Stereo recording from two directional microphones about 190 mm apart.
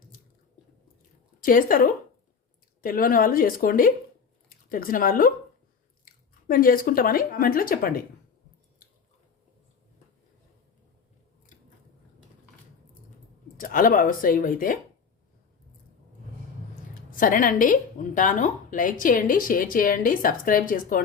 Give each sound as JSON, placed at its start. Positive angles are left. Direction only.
{"t": 1.4, "sound": "a woman's voice", "side_deg": 45}
{"t": 13.6, "sound": "a woman's voice", "side_deg": 45}
{"t": 17.1, "sound": "a woman's voice", "side_deg": 45}